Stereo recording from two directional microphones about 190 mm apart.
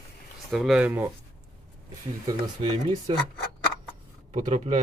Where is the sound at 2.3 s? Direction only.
25° right (ahead or behind).